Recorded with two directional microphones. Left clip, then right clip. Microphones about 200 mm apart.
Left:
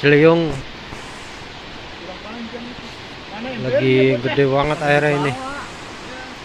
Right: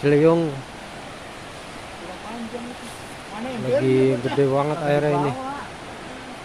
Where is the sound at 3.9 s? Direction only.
5° right (ahead or behind).